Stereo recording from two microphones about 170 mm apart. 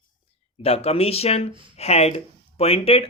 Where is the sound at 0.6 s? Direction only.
35° left (ahead or behind).